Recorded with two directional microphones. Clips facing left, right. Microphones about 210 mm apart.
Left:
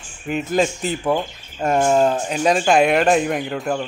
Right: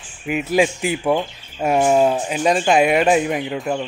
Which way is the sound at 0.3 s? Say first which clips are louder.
Right 2 dB; 10° right (ahead or behind).